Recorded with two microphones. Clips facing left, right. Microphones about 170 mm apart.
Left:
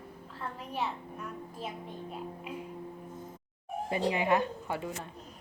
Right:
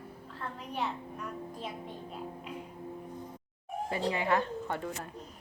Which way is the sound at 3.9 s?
20° left (ahead or behind).